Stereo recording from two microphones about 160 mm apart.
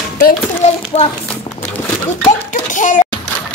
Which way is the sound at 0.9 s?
30° left (ahead or behind).